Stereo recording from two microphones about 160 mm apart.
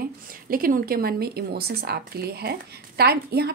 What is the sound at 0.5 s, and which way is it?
A woman's voice, 65° right (ahead or behind).